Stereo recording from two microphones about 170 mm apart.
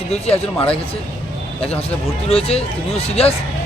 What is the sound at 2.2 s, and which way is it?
Speech, 35° left (ahead or behind).